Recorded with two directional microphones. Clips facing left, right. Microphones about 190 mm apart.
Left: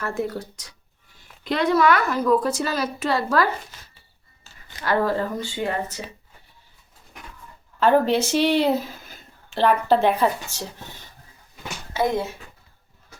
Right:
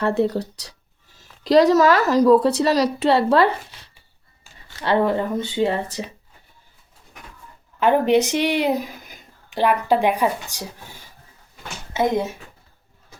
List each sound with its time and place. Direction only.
0.0 s a woman's voice: 35° right (ahead or behind)
4.8 s speech: 25° right (ahead or behind)
7.8 s speech: 15° right (ahead or behind)